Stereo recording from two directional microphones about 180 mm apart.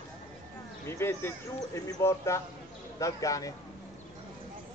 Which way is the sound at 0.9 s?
15° left (ahead or behind).